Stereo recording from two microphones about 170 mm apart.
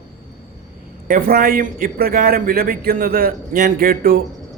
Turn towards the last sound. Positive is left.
turn(degrees=-60)  # may be behind; listen again after turning